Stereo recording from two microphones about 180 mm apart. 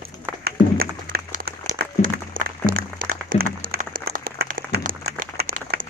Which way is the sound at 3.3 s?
55° right (ahead or behind).